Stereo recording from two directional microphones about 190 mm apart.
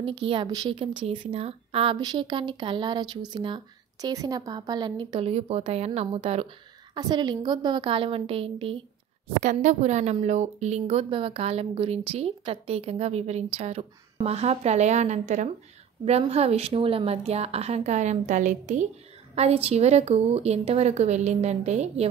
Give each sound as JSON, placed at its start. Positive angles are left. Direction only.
{"t": 0.0, "sound": "speech", "side_deg": -30}
{"t": 9.4, "sound": "a woman's voice", "side_deg": -40}